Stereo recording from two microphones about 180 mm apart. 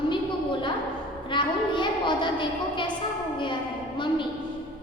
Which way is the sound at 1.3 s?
25° left (ahead or behind).